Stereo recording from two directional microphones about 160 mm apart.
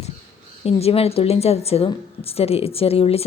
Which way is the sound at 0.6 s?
40° left (ahead or behind).